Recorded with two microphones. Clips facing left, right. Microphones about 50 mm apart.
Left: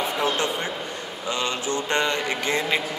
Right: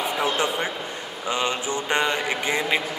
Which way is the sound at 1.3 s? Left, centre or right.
Centre.